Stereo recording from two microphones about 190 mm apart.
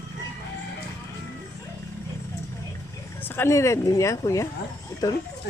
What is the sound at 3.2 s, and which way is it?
Speech, 10° left (ahead or behind).